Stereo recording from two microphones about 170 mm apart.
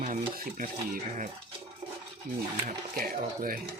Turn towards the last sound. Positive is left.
turn(degrees=-55)  # may be behind; listen again after turning